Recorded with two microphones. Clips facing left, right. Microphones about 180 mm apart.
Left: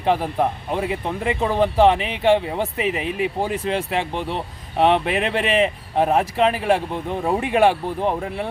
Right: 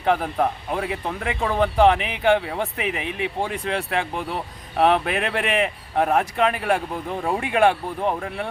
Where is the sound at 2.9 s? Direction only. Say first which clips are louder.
Left 4 dB; 35° left (ahead or behind).